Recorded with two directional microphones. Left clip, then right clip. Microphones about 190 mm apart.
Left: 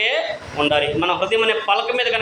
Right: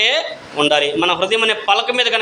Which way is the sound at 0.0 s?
45° right (ahead or behind).